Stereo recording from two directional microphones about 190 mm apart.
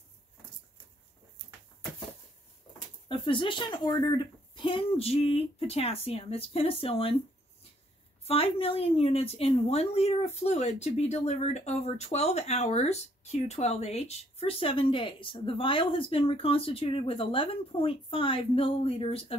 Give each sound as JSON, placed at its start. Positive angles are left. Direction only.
{"t": 3.1, "sound": "a woman's voice", "side_deg": 25}
{"t": 8.2, "sound": "a woman's voice", "side_deg": 30}